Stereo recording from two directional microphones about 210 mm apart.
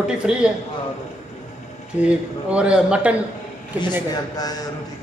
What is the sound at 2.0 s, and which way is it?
A man's voice, 5° right (ahead or behind).